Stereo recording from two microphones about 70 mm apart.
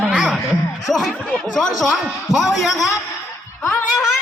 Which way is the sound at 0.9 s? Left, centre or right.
Centre.